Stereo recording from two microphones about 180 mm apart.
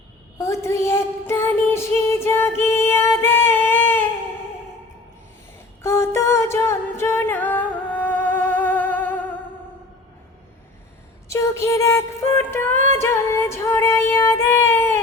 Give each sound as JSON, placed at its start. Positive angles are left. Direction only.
{"t": 0.3, "sound": "a sound", "side_deg": 15}
{"t": 5.8, "sound": "music", "side_deg": 15}
{"t": 11.3, "sound": "music", "side_deg": 15}
{"t": 13.0, "sound": "child singing", "side_deg": 15}